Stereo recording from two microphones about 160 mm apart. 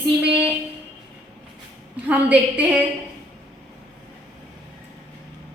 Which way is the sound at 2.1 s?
10° right (ahead or behind).